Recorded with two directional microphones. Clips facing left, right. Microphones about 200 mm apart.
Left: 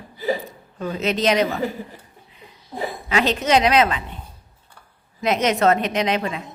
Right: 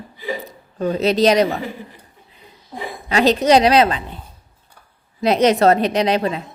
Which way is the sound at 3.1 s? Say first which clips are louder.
Right 6 dB; 35° right (ahead or behind).